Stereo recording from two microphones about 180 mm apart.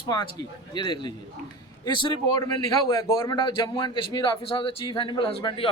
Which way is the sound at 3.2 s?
25° left (ahead or behind).